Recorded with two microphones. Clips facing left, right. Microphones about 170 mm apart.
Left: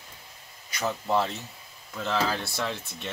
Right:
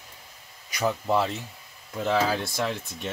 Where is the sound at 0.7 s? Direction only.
10° right (ahead or behind).